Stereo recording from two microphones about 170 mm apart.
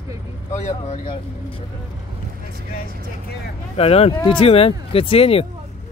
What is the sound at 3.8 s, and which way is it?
Speech, 35° left (ahead or behind).